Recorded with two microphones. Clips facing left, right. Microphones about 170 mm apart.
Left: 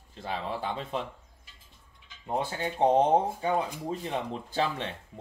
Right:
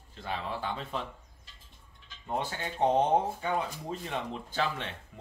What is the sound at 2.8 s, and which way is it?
Speech, 25° left (ahead or behind).